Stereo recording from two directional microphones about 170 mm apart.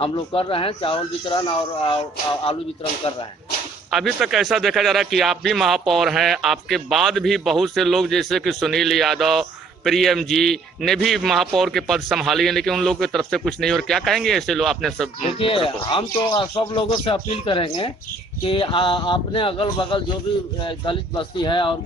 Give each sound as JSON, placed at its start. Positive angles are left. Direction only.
{"t": 0.0, "sound": "speech", "side_deg": 30}
{"t": 3.9, "sound": "a man's voice", "side_deg": 0}
{"t": 15.3, "sound": "speech", "side_deg": 30}